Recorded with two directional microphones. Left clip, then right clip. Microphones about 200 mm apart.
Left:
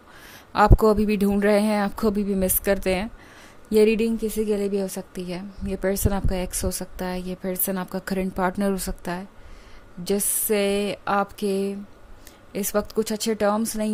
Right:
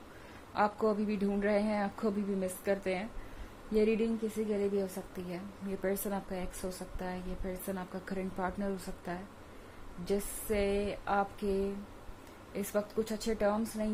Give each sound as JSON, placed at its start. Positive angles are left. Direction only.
{"t": 0.5, "sound": "a woman's voice", "side_deg": 55}